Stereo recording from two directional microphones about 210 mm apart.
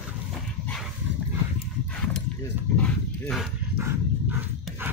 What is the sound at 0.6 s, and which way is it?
Dog, 5° left (ahead or behind).